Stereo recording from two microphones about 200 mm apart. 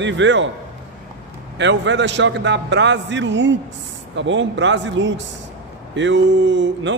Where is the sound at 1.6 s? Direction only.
65° right (ahead or behind).